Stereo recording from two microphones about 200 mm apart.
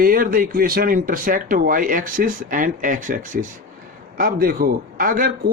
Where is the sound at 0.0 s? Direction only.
45° right (ahead or behind).